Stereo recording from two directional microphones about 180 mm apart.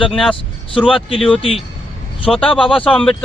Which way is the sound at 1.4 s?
30° left (ahead or behind).